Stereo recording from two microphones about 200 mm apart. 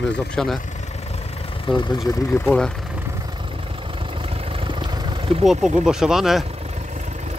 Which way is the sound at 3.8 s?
25° right (ahead or behind).